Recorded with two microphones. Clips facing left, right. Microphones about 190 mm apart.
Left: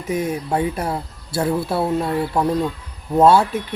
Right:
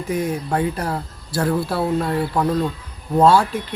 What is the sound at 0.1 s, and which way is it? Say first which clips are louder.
Speech: left 1 dB; 25° left (ahead or behind).